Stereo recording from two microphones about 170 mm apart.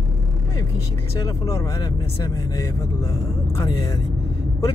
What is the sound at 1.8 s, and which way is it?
Speech, 25° left (ahead or behind).